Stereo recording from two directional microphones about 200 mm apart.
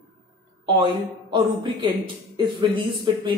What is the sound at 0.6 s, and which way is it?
Speech, 25° right (ahead or behind).